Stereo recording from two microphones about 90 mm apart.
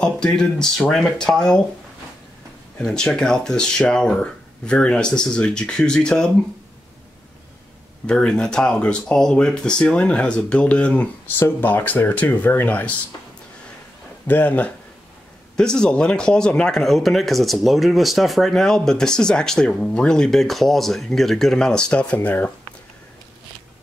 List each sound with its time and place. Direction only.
0.0 s speech: 10° left (ahead or behind)
2.8 s speech: 10° left (ahead or behind)
8.1 s speech: 10° left (ahead or behind)
14.2 s speech: 20° left (ahead or behind)